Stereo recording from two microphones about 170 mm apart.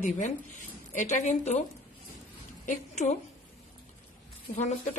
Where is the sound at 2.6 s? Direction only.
45° left (ahead or behind).